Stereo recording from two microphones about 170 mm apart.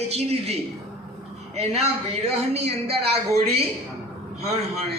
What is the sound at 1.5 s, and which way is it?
A woman's voice, 40° right (ahead or behind).